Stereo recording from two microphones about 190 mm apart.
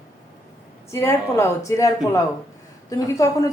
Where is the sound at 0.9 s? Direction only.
15° left (ahead or behind).